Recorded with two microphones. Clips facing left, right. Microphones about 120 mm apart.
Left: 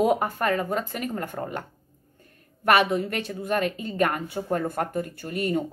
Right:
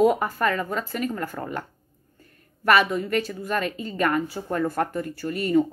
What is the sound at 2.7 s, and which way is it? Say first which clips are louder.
A woman's voice: right 1 dB; 55° left (ahead or behind).